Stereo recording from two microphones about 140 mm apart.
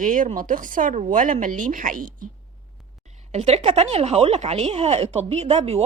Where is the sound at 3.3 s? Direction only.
50° right (ahead or behind).